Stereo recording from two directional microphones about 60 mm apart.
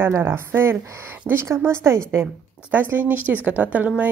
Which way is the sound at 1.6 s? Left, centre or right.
Right.